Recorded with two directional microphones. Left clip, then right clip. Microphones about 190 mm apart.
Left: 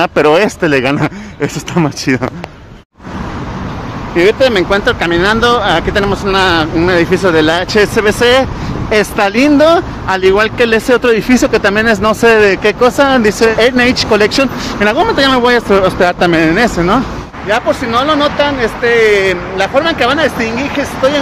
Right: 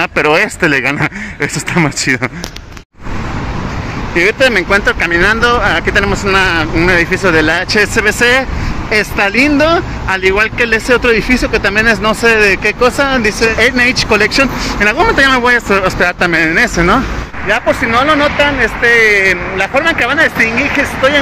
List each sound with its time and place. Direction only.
0.0 s speech: 15° left (ahead or behind)
4.1 s speech: 5° left (ahead or behind)